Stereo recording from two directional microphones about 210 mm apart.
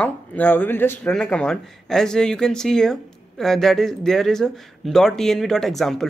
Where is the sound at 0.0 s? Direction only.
10° left (ahead or behind).